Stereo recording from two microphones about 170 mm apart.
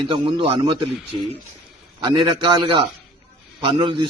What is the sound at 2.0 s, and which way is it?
A man's voice, 25° right (ahead or behind).